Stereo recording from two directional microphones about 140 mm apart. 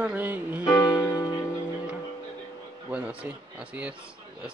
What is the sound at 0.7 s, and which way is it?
Music, 25° left (ahead or behind).